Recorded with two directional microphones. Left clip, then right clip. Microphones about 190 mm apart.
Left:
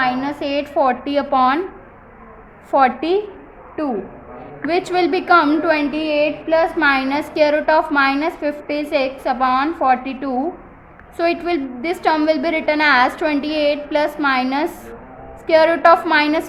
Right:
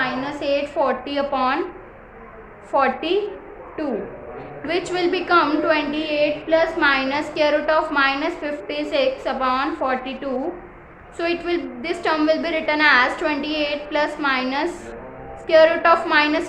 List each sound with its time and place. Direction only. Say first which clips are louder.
0.0 s a woman's voice: left 4 dB; 35° left (ahead or behind)
2.7 s a woman's voice: left 4 dB; 35° left (ahead or behind)
4.6 s a woman's voice: left 5 dB; 35° left (ahead or behind)